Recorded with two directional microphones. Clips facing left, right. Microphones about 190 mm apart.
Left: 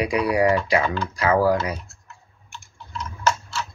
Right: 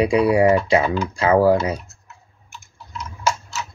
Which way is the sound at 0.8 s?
10° right (ahead or behind).